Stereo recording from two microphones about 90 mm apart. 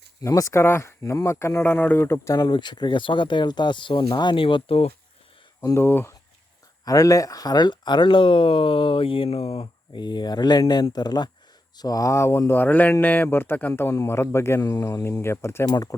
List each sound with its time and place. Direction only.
0.2 s speech: 40° left (ahead or behind)
1.6 s speech: 20° left (ahead or behind)
2.4 s speech: 55° left (ahead or behind); by 4.9 s 85° left
5.7 s speech: 25° left (ahead or behind)
6.8 s speech: 40° left (ahead or behind); by 10.0 s 90° left
10.0 s speech: 50° left (ahead or behind); by 13.9 s 20° left (ahead or behind)
13.9 s speech: 35° left (ahead or behind)
14.6 s speech: 45° left (ahead or behind)